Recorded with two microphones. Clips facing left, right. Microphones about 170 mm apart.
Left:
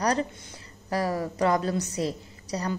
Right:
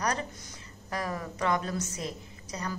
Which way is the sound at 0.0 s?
35° left (ahead or behind).